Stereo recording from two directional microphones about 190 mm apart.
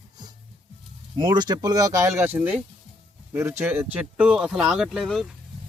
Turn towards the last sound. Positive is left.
turn(degrees=0)  # may be behind; listen again after turning